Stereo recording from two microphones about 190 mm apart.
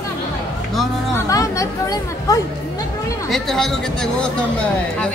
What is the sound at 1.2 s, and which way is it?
Speech, 15° left (ahead or behind).